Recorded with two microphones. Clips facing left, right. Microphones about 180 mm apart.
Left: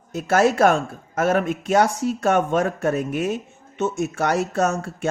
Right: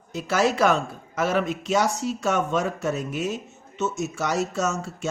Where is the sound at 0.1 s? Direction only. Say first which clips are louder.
Left 4 dB; 55° left (ahead or behind).